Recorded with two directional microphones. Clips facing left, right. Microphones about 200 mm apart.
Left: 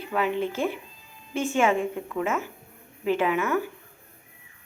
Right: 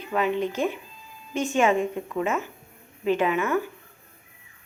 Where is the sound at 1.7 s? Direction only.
15° right (ahead or behind).